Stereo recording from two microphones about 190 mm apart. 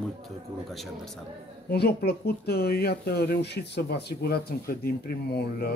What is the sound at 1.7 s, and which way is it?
Speech, 55° left (ahead or behind).